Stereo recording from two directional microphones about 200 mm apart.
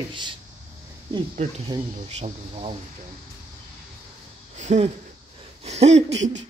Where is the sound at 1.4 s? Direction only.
35° right (ahead or behind).